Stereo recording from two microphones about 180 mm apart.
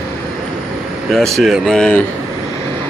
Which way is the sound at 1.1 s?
Centre (ahead or behind).